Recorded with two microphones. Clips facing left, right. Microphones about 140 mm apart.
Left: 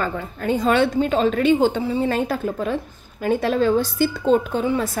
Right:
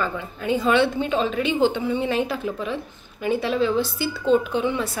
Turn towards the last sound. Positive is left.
turn(degrees=40)  # may be behind; listen again after turning